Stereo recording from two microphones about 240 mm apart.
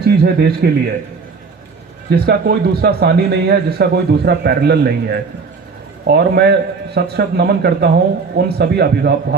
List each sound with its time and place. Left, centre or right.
0.0 s speech: right
2.0 s a man's voice: right